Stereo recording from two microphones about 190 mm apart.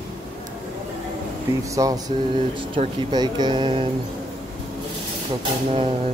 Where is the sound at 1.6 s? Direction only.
15° right (ahead or behind).